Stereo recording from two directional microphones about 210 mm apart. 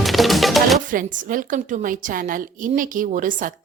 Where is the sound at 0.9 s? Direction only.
40° right (ahead or behind).